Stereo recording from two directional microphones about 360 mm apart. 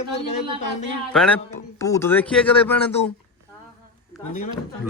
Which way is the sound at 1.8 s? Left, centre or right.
Centre.